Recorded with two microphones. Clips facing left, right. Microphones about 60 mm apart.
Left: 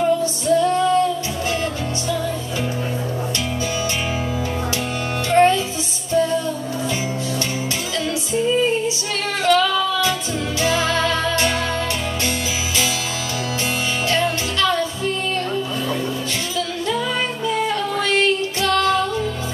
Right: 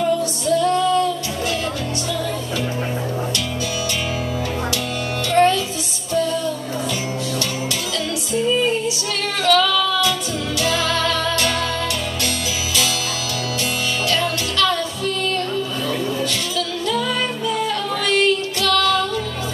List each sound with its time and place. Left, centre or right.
0.0 s music: left
5.3 s music: left
9.4 s female singing: left
10.6 s music: left
14.0 s music: left